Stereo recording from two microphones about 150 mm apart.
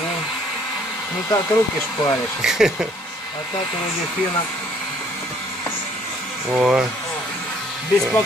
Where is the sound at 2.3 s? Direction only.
5° right (ahead or behind).